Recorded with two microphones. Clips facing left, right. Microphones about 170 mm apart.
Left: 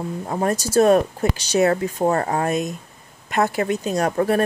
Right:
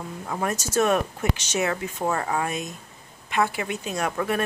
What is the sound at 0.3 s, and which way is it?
A woman's voice, 35° left (ahead or behind).